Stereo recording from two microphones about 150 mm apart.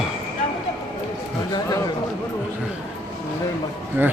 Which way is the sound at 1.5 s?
25° left (ahead or behind).